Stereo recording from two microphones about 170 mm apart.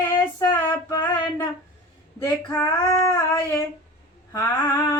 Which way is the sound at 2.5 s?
15° left (ahead or behind).